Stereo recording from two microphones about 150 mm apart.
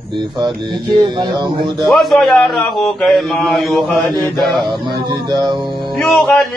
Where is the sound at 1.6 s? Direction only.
Centre (ahead or behind).